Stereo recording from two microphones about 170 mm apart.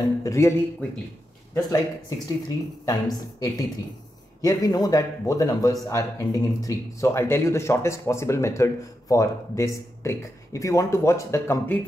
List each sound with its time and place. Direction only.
0.2 s a man's voice: 15° left (ahead or behind)